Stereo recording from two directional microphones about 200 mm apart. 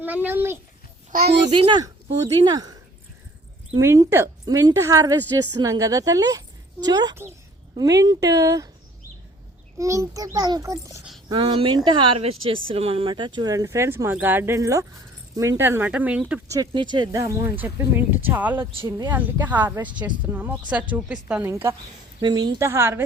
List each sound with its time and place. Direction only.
0.0 s a woman's voice: 10° right (ahead or behind)
1.5 s a woman's voice: 25° right (ahead or behind)
3.8 s a woman's voice: 15° right (ahead or behind)
9.7 s a woman's voice: 15° right (ahead or behind)
16.6 s a woman's voice: 20° right (ahead or behind)
19.1 s a woman's voice: 10° right (ahead or behind)
20.9 s a woman's voice: 5° right (ahead or behind)
22.2 s a woman's voice: 20° right (ahead or behind)